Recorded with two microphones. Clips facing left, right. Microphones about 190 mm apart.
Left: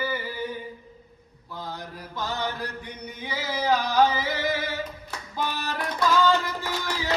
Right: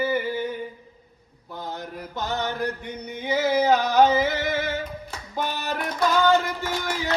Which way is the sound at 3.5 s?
20° right (ahead or behind).